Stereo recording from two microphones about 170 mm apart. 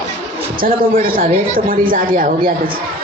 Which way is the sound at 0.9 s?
55° right (ahead or behind).